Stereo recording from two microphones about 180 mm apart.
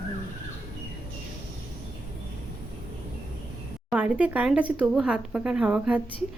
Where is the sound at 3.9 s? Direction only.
5° right (ahead or behind).